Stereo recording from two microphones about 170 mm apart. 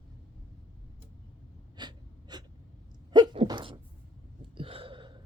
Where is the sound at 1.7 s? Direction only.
25° right (ahead or behind).